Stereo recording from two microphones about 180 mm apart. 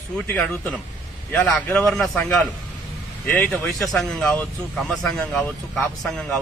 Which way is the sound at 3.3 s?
5° left (ahead or behind).